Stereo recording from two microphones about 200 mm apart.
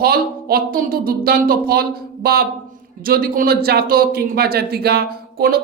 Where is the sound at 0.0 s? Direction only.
50° right (ahead or behind).